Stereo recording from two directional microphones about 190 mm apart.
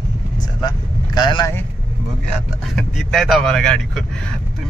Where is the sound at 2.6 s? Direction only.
Centre (ahead or behind).